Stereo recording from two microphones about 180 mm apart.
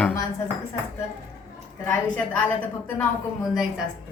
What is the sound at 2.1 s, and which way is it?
A woman's voice, 10° left (ahead or behind).